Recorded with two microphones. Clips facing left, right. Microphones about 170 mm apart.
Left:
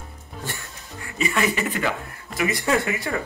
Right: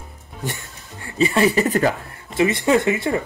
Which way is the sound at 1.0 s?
30° right (ahead or behind).